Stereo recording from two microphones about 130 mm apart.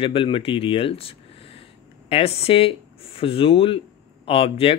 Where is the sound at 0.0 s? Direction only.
45° left (ahead or behind).